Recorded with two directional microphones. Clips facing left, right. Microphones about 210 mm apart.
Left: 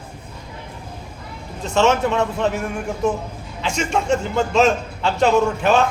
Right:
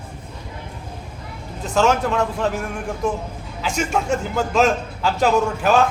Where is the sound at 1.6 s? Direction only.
Centre (ahead or behind).